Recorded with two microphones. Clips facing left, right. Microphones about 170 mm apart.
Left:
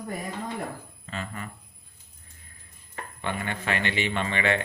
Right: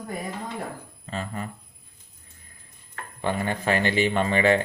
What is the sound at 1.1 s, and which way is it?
Speech, 35° right (ahead or behind).